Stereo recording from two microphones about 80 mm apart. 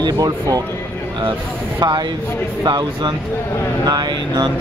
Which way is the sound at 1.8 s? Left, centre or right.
Right.